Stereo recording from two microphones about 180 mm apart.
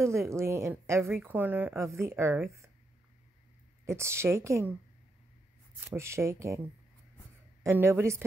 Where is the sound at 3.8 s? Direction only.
15° right (ahead or behind).